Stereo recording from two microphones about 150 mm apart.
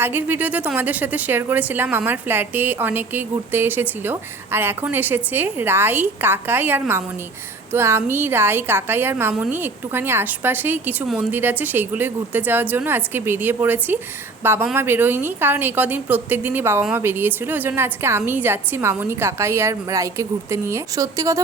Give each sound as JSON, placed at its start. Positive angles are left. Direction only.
{"t": 0.0, "sound": "a woman's voice", "side_deg": -15}